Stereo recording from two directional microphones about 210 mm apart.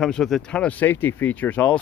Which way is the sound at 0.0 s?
Centre (ahead or behind).